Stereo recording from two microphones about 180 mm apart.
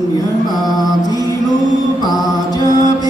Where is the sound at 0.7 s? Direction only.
20° left (ahead or behind).